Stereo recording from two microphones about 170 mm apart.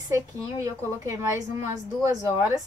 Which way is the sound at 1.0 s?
15° right (ahead or behind).